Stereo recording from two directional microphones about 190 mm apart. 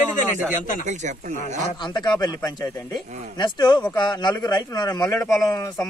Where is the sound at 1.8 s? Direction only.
25° left (ahead or behind).